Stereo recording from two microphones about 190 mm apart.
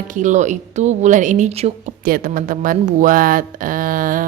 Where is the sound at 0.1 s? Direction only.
40° right (ahead or behind).